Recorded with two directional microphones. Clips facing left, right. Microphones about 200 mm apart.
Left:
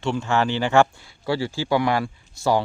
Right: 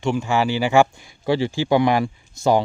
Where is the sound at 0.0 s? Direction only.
10° right (ahead or behind).